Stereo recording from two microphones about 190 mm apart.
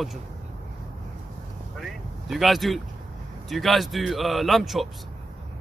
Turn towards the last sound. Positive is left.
turn(degrees=0)  # may be behind; listen again after turning